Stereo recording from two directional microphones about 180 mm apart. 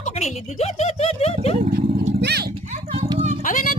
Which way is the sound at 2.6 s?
40° right (ahead or behind).